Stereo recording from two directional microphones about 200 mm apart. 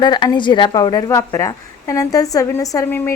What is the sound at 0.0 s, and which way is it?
A woman's voice, 20° left (ahead or behind).